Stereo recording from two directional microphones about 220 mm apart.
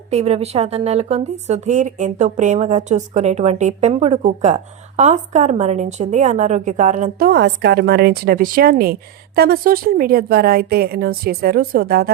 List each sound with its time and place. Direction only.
0.1 s a woman's voice: 30° right (ahead or behind); by 12.1 s 45° right (ahead or behind)